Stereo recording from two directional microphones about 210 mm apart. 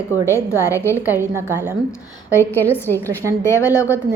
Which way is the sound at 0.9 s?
10° right (ahead or behind).